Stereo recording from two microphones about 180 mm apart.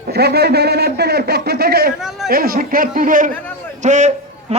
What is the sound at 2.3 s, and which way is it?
A man's voice, 55° right (ahead or behind).